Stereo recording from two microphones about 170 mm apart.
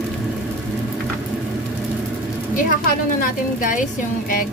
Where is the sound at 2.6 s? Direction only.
55° left (ahead or behind).